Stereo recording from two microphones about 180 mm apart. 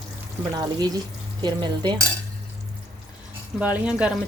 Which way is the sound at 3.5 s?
5° right (ahead or behind).